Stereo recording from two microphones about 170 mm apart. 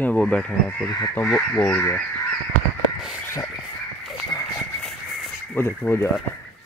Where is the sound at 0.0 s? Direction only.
10° left (ahead or behind).